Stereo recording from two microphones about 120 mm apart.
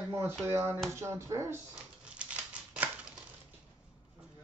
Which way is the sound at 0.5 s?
20° right (ahead or behind).